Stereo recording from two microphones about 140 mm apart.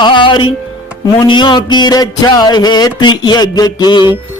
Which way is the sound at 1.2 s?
35° left (ahead or behind).